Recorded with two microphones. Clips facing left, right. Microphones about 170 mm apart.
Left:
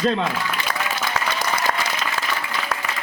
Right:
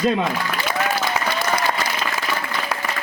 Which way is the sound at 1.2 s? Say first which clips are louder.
Right 1 dB; 15° right (ahead or behind).